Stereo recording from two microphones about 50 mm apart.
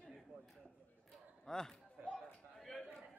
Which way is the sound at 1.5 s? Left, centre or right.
Centre.